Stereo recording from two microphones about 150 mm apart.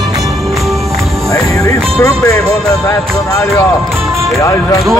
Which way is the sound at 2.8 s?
25° left (ahead or behind).